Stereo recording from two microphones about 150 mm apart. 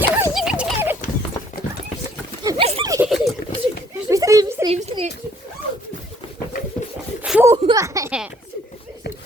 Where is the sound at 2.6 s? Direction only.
40° right (ahead or behind).